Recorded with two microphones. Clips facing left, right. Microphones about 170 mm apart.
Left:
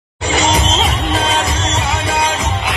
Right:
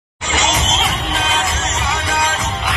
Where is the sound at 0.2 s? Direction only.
30° left (ahead or behind).